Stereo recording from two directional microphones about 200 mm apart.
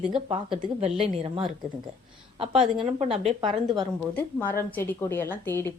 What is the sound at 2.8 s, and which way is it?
Speech, 30° right (ahead or behind).